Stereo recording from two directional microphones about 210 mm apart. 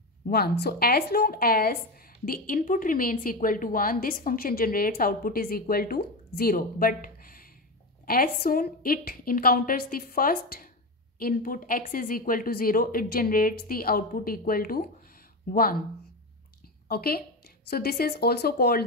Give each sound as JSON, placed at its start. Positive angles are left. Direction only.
{"t": 0.3, "sound": "a woman's voice", "side_deg": 50}
{"t": 16.8, "sound": "a woman's voice", "side_deg": 45}